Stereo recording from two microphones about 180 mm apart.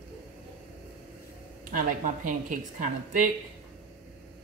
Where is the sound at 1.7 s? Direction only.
45° right (ahead or behind).